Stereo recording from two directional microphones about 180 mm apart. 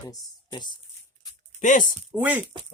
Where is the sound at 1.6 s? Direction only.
45° left (ahead or behind).